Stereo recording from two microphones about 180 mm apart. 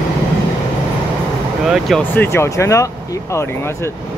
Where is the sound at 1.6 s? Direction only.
Centre (ahead or behind).